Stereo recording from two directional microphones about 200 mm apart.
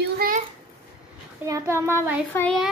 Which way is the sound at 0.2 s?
50° right (ahead or behind).